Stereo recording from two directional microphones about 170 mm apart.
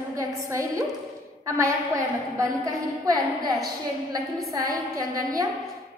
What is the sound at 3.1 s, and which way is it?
A woman's voice, 20° right (ahead or behind).